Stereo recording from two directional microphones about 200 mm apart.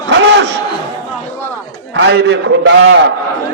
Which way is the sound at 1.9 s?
60° right (ahead or behind).